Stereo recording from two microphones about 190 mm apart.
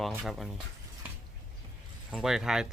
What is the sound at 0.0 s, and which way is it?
Speech, centre (ahead or behind).